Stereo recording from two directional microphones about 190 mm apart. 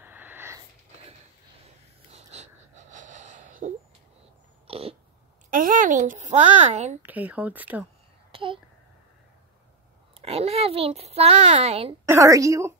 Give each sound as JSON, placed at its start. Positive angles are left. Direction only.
{"t": 0.0, "sound": "a sound", "side_deg": -10}
{"t": 2.0, "sound": "wheeze", "side_deg": -35}
{"t": 4.6, "sound": "throat clearing", "side_deg": -30}
{"t": 5.5, "sound": "a child's voice", "side_deg": -45}
{"t": 7.0, "sound": "speech", "side_deg": -10}
{"t": 8.3, "sound": "a sound", "side_deg": -30}
{"t": 10.2, "sound": "a child's voice", "side_deg": -30}
{"t": 12.1, "sound": "speech", "side_deg": -15}